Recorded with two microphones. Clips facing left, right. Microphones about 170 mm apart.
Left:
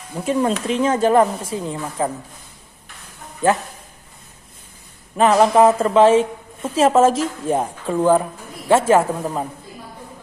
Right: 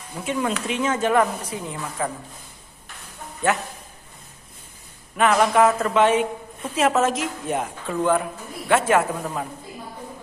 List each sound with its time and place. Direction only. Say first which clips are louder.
0.2 s speech: left 5 dB; 35° left (ahead or behind)
5.1 s a woman's voice: left 4 dB; 30° left (ahead or behind)